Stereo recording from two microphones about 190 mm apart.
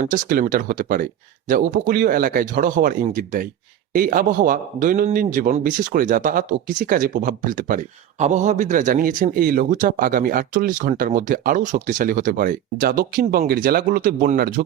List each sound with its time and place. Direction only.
0.0 s a man's voice: 45° right (ahead or behind)